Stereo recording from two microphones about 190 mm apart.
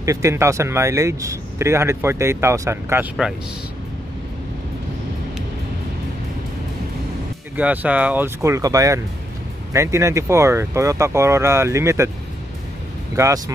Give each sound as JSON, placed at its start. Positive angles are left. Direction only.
{"t": 0.0, "sound": "speech", "side_deg": -15}
{"t": 7.5, "sound": "speech", "side_deg": -10}
{"t": 13.1, "sound": "speech", "side_deg": -15}